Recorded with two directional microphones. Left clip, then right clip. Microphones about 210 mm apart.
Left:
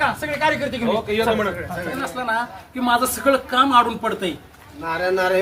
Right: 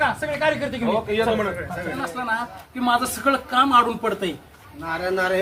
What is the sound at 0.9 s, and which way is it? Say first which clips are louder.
A woman's voice: left 1 dB; centre (ahead or behind).